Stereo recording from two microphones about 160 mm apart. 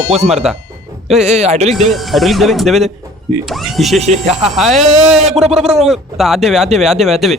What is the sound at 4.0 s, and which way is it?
Speech, 45° right (ahead or behind).